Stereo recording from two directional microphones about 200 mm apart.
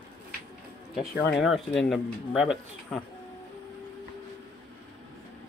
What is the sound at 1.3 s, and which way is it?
Speech, centre (ahead or behind).